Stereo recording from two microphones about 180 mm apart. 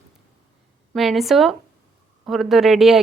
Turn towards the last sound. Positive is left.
turn(degrees=0)  # may be behind; listen again after turning